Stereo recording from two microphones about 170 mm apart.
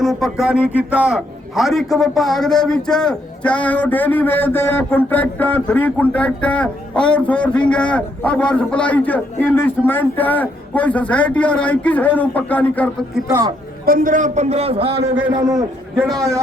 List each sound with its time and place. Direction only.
0.0 s a man's voice: centre (ahead or behind)
13.8 s a man's voice: 55° right (ahead or behind); by 15.2 s 35° right (ahead or behind)
15.3 s a man's voice: 25° right (ahead or behind)